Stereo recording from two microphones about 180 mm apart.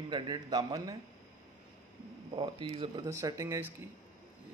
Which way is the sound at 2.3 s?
30° right (ahead or behind).